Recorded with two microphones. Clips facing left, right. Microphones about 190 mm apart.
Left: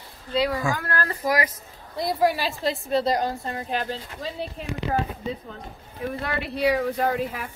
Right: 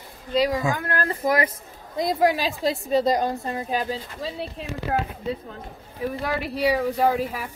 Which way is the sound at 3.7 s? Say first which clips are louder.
Right 1 dB; 5° right (ahead or behind).